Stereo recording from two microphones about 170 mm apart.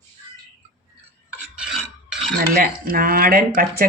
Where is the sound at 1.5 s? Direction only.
5° right (ahead or behind).